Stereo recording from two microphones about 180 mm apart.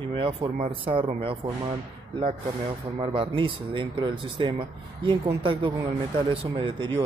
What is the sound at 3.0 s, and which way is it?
Speech, 30° right (ahead or behind).